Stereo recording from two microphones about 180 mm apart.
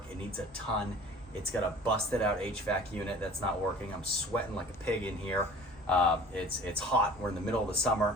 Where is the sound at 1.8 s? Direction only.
5° left (ahead or behind).